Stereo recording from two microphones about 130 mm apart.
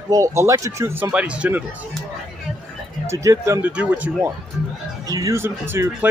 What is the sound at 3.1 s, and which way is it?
Speech, 25° right (ahead or behind).